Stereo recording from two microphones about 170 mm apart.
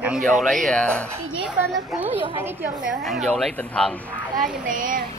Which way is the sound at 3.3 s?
5° left (ahead or behind).